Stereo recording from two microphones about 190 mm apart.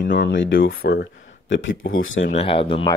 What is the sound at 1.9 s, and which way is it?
Speech, 90° left.